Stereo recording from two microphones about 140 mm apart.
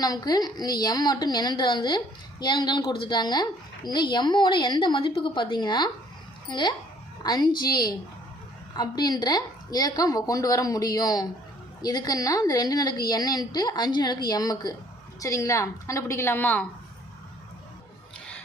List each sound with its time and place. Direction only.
0.0 s a woman's voice: 25° left (ahead or behind)